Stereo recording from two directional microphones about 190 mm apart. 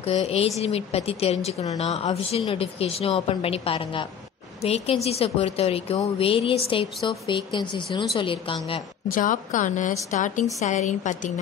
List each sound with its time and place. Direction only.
0.0 s a woman's voice: 35° left (ahead or behind)
9.1 s a woman's voice: 45° left (ahead or behind)